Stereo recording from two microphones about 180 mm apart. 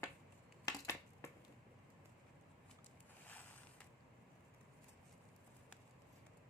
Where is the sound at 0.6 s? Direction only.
15° left (ahead or behind).